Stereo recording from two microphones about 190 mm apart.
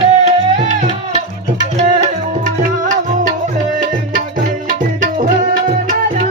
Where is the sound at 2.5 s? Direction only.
40° right (ahead or behind).